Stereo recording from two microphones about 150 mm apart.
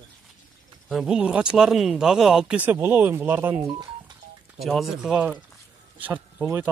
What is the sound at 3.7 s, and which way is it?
Telephone dialing, 30° right (ahead or behind).